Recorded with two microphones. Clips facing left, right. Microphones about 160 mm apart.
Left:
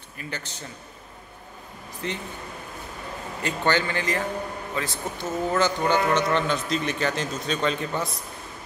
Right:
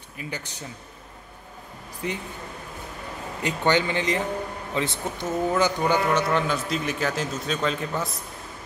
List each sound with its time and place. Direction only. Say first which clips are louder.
0.2 s speech: right 1 dB; 15° right (ahead or behind)
2.0 s speech: right 1 dB; 10° right (ahead or behind)
3.4 s speech: right 2 dB; 15° right (ahead or behind)